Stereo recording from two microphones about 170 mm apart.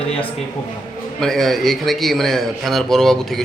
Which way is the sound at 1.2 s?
Centre (ahead or behind).